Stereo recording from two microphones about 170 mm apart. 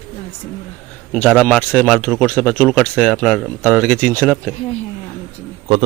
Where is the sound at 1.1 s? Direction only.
5° left (ahead or behind).